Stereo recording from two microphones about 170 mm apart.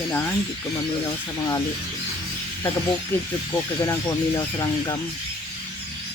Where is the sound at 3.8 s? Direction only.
20° left (ahead or behind).